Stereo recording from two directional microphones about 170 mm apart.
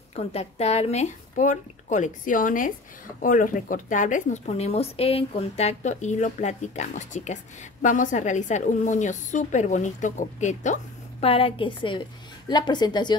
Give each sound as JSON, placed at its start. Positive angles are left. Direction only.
{"t": 0.1, "sound": "a woman's voice", "side_deg": 40}